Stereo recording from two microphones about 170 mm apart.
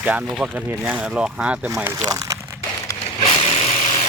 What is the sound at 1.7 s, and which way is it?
Speech, 15° right (ahead or behind).